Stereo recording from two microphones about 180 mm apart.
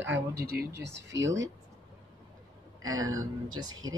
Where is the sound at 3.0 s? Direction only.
20° right (ahead or behind).